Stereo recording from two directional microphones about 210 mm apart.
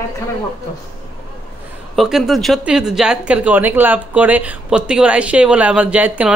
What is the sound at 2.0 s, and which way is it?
Speech, centre (ahead or behind).